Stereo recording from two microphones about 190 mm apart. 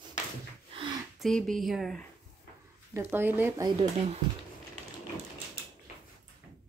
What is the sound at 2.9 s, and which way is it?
Speech, 10° right (ahead or behind).